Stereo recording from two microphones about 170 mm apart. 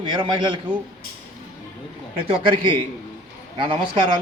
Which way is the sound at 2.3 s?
30° right (ahead or behind).